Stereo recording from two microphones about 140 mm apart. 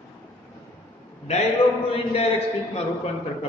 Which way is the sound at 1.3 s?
50° left (ahead or behind).